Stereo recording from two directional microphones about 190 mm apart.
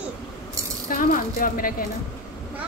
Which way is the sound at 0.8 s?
45° left (ahead or behind).